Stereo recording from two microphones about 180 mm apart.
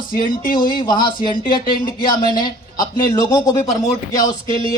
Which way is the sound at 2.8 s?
20° left (ahead or behind).